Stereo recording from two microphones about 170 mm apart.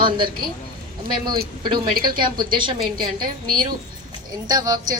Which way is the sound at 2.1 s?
30° right (ahead or behind).